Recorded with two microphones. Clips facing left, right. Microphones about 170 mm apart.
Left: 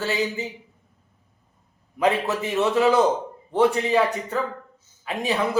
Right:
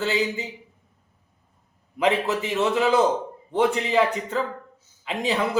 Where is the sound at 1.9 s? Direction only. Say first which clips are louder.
Even; 20° right (ahead or behind).